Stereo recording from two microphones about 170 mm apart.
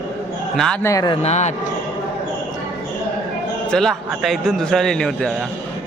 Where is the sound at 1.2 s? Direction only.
40° left (ahead or behind).